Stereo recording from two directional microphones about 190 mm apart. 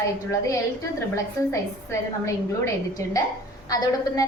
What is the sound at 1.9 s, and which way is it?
A woman's voice, 15° left (ahead or behind).